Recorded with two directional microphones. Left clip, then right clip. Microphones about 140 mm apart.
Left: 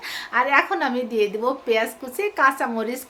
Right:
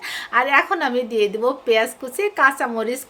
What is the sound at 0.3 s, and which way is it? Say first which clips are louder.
Speech: right 2 dB; 25° right (ahead or behind).